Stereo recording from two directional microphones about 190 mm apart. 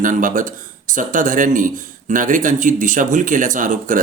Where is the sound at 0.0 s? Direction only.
45° right (ahead or behind).